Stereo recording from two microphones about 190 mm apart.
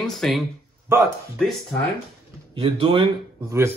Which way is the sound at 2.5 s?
30° right (ahead or behind).